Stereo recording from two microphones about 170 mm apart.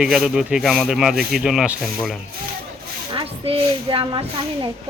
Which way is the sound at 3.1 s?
35° right (ahead or behind).